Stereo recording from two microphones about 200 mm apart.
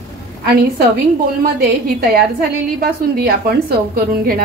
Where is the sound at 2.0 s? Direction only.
50° right (ahead or behind).